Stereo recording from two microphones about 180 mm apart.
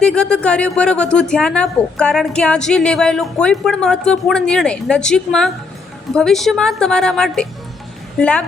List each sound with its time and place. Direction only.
0.0 s a woman's voice: 5° left (ahead or behind)